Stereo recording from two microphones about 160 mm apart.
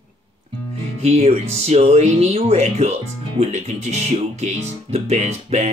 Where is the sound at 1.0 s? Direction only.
40° right (ahead or behind).